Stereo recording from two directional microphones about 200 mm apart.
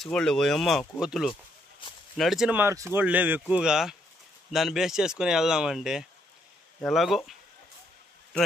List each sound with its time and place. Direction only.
0.0 s speech: 5° left (ahead or behind)